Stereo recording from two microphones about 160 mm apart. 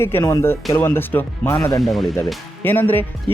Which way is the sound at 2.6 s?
10° left (ahead or behind).